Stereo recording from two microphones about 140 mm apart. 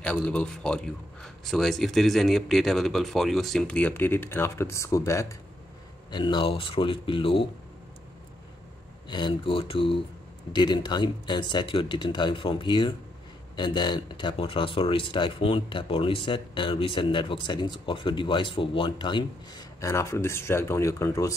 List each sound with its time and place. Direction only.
0.0 s speech: 5° left (ahead or behind)
6.1 s speech: 35° left (ahead or behind)
9.1 s speech: 35° left (ahead or behind)
19.8 s speech: 20° left (ahead or behind)